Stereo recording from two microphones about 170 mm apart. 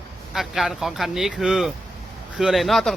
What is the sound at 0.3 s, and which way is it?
Speech, centre (ahead or behind).